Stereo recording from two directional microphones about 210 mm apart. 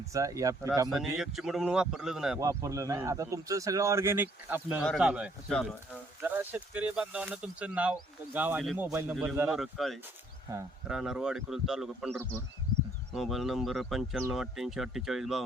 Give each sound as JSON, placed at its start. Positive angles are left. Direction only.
{"t": 0.0, "sound": "speech", "side_deg": -15}
{"t": 1.2, "sound": "speech", "side_deg": 0}
{"t": 2.4, "sound": "speech", "side_deg": -15}